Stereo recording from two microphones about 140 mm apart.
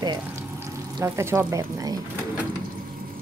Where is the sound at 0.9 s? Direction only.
20° right (ahead or behind).